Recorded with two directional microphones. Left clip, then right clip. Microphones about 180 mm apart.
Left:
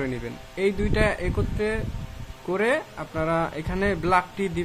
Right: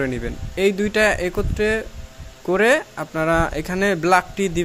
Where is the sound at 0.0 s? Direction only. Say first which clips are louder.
Right 6 dB; 20° right (ahead or behind).